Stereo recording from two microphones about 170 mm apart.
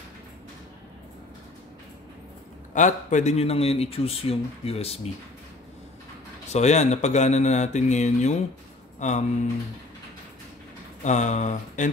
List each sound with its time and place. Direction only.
2.7 s speech: 45° left (ahead or behind)
6.5 s speech: 40° left (ahead or behind)
11.1 s speech: 45° left (ahead or behind)